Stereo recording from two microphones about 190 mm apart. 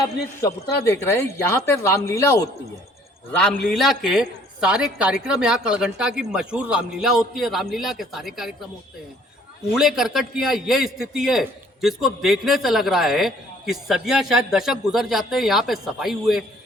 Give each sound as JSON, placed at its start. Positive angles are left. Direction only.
{"t": 0.9, "sound": "speech", "side_deg": 15}
{"t": 3.3, "sound": "a man's voice", "side_deg": 5}
{"t": 9.7, "sound": "a man's voice", "side_deg": 0}